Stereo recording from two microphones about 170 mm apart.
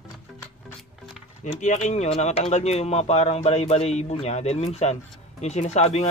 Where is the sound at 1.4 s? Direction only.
45° left (ahead or behind).